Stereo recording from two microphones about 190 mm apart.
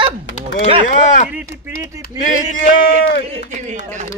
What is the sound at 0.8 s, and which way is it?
Speech, 40° left (ahead or behind).